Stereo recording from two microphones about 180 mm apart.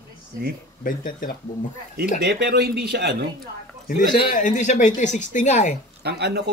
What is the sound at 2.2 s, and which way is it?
Speech, 60° right (ahead or behind).